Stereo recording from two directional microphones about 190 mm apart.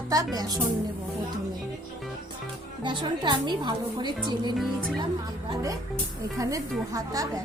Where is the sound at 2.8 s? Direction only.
25° right (ahead or behind).